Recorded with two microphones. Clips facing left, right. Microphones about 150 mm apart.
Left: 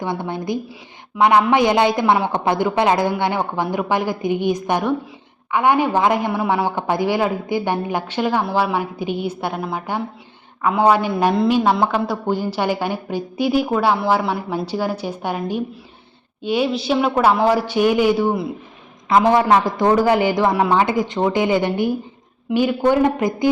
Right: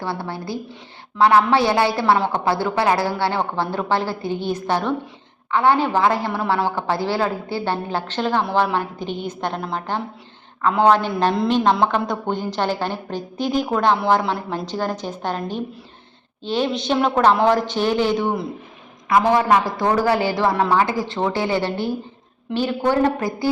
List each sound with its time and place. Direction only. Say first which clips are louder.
0.0 s a woman's voice: left 3 dB; 20° left (ahead or behind)
19.0 s speech: left 2 dB; 20° left (ahead or behind)